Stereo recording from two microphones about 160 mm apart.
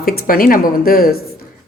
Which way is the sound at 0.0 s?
70° left (ahead or behind).